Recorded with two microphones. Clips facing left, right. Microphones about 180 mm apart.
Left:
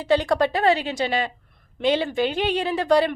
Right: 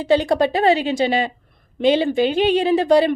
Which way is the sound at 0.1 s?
25° right (ahead or behind).